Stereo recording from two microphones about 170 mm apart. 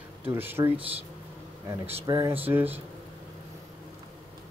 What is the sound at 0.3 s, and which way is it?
Speech, 15° right (ahead or behind).